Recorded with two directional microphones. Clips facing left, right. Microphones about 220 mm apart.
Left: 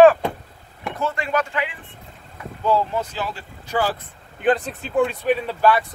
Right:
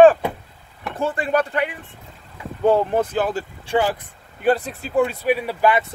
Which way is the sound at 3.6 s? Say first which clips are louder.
Right 3 dB; 25° right (ahead or behind).